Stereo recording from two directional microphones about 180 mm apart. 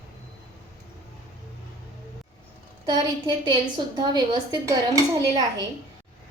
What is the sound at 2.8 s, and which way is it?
A woman's voice, 25° right (ahead or behind).